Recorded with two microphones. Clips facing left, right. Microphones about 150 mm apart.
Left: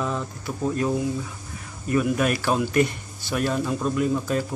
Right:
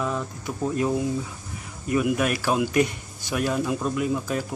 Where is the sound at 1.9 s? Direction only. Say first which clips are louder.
Left 1 dB; 10° right (ahead or behind).